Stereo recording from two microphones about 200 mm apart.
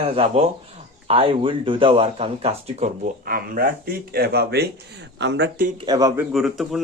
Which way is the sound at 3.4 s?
50° right (ahead or behind).